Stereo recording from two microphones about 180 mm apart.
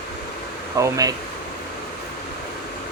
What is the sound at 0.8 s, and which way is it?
Speech, 20° right (ahead or behind).